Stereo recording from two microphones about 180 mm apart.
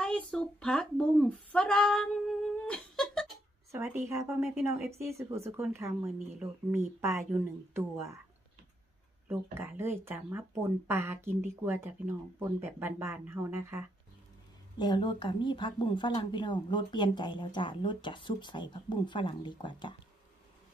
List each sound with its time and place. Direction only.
0.0 s a sound: 5° left (ahead or behind)
3.7 s speech: 15° right (ahead or behind)
7.0 s speech: 15° right (ahead or behind)
9.3 s speech: 10° right (ahead or behind)
14.8 s speech: 25° left (ahead or behind)